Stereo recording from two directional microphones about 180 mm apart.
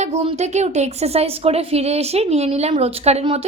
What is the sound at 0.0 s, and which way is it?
A woman's voice, 35° right (ahead or behind).